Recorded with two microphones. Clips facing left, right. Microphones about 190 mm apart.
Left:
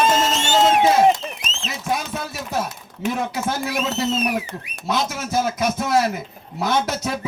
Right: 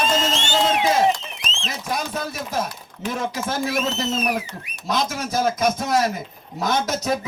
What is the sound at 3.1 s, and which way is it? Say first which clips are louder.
A man's voice: left 1 dB; 45° right (ahead or behind).